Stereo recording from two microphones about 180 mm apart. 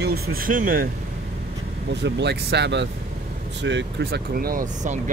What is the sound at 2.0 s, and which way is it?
Speech, 70° right (ahead or behind).